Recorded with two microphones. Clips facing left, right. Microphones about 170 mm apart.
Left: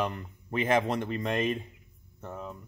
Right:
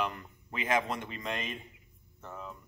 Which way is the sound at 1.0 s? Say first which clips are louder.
Left 8 dB; 50° left (ahead or behind).